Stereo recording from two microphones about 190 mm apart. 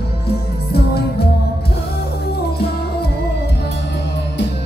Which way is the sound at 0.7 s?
55° left (ahead or behind).